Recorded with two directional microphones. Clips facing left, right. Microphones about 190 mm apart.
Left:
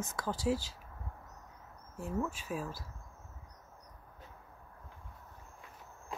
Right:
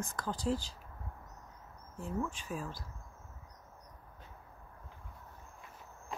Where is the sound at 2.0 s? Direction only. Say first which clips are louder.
Left 1 dB; 5° left (ahead or behind).